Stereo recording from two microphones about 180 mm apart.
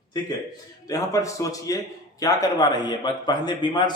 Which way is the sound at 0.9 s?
20° left (ahead or behind).